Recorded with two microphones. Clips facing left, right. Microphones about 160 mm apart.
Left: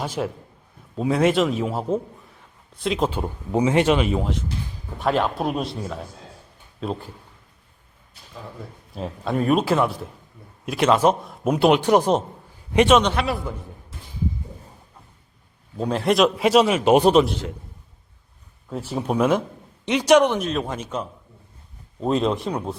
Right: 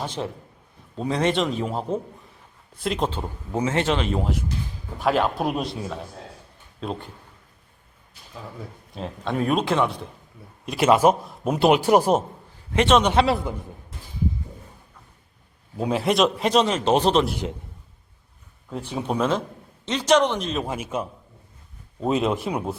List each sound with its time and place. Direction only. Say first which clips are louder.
0.0 s a man's voice: left 3 dB; 10° left (ahead or behind)
3.1 s speech: left 4 dB; 15° left (ahead or behind)
8.4 s speech: even; centre (ahead or behind)
12.7 s speech: left 3 dB; 10° left (ahead or behind)
13.1 s a man's voice: right 5 dB; 25° right (ahead or behind)
15.8 s speech: left 2 dB; 5° right (ahead or behind)
18.7 s speech: left 2 dB; centre (ahead or behind)
20.5 s speech: left 1 dB; 5° right (ahead or behind)